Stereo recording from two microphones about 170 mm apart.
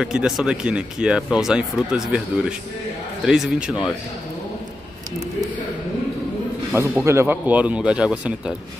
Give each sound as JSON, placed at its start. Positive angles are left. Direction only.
{"t": 0.0, "sound": "speech", "side_deg": -5}
{"t": 6.7, "sound": "speech", "side_deg": -15}